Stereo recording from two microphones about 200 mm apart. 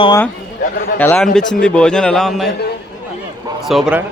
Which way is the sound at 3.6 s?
Centre (ahead or behind).